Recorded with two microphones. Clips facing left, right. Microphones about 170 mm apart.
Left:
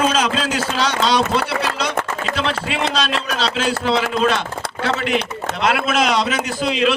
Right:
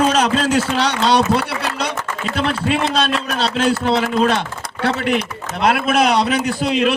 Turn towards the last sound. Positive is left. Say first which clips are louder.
# right 2 dB
turn(degrees=-55)  # may be behind; listen again after turning